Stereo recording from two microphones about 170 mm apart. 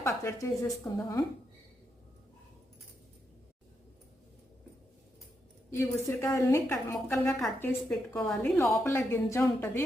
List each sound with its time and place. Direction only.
0.0 s a woman's voice: 15° left (ahead or behind)
5.7 s a woman's voice: 15° left (ahead or behind)
7.3 s a woman's voice: 5° left (ahead or behind)